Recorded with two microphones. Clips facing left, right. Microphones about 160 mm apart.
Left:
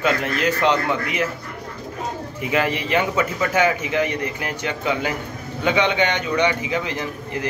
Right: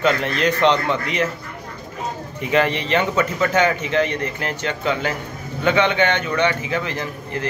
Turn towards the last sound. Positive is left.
turn(degrees=15)  # may be behind; listen again after turning